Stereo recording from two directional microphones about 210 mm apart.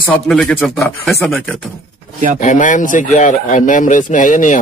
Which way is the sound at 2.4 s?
35° left (ahead or behind).